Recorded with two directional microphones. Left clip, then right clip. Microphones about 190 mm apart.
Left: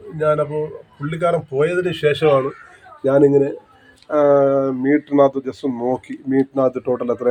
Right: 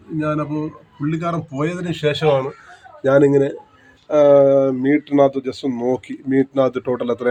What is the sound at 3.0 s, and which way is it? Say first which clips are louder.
Speech: even; 15° right (ahead or behind).